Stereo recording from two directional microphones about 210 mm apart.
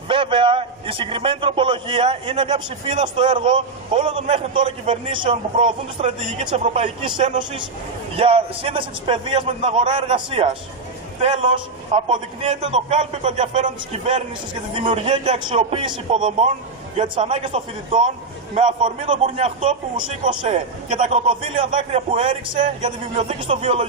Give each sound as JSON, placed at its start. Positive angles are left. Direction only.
{"t": 0.1, "sound": "a man's voice", "side_deg": -25}